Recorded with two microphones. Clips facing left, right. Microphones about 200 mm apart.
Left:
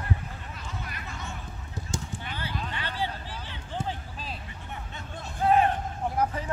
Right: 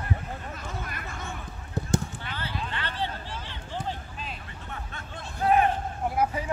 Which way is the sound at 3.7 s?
35° left (ahead or behind).